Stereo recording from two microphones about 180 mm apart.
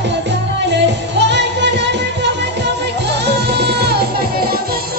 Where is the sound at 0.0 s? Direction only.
75° right (ahead or behind).